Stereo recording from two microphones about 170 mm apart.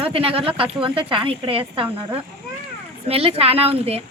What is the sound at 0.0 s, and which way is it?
Speech, 35° right (ahead or behind).